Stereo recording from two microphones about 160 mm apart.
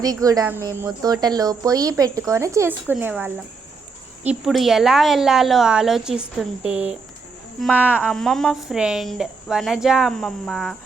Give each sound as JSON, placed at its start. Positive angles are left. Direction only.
{"t": 0.0, "sound": "a woman's voice", "side_deg": -25}
{"t": 8.0, "sound": "a woman's voice", "side_deg": 0}